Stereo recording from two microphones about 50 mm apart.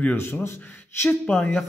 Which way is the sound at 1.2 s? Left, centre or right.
Centre.